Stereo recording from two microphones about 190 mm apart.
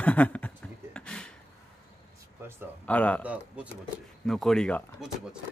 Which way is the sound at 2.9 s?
5° left (ahead or behind).